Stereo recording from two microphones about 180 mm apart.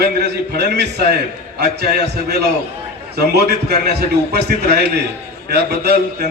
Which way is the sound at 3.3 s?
60° right (ahead or behind).